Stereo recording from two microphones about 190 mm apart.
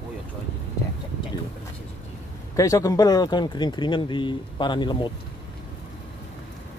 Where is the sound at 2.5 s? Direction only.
15° left (ahead or behind).